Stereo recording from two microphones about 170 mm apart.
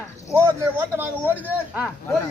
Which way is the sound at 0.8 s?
10° right (ahead or behind).